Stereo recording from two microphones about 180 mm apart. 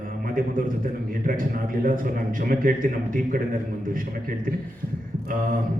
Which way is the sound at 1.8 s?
50° right (ahead or behind).